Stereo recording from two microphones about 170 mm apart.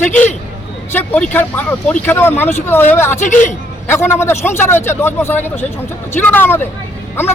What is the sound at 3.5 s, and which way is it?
Speech, 15° left (ahead or behind).